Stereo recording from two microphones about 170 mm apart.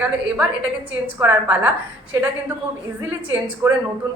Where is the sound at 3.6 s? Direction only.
15° right (ahead or behind).